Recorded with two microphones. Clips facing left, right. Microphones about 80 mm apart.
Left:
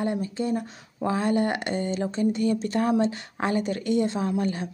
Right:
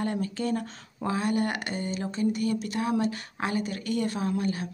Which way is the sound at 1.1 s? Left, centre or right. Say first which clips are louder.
Left 3 dB; left.